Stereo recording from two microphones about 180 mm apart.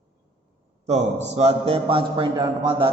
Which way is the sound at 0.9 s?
35° right (ahead or behind).